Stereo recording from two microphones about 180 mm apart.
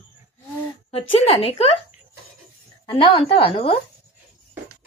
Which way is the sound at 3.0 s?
30° left (ahead or behind).